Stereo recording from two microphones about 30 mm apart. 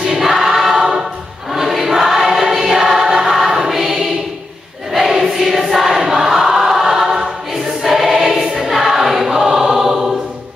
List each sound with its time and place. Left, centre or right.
0.2 s choir: centre
0.7 s choir: centre
1.5 s choir: centre
5.0 s choir: centre